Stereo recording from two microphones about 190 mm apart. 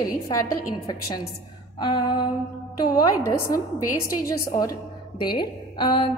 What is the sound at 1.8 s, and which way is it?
A woman's voice, 25° left (ahead or behind).